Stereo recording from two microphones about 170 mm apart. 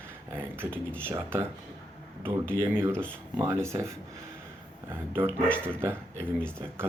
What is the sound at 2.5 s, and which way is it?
Speech, 15° right (ahead or behind).